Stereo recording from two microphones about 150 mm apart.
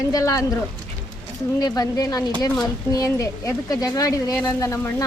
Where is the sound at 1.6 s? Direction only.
25° left (ahead or behind).